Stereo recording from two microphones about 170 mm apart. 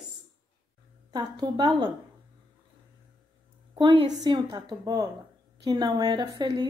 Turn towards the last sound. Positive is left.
turn(degrees=-25)  # may be behind; listen again after turning